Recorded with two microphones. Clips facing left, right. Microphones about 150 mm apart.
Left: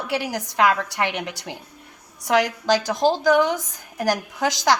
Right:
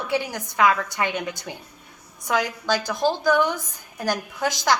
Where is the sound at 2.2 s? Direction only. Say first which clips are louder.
Left 4 dB; 90° left.